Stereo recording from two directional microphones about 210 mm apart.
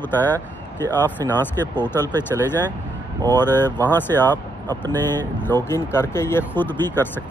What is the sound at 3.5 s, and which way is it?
Speech, 10° left (ahead or behind).